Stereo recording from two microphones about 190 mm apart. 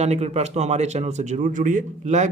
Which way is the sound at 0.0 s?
35° right (ahead or behind).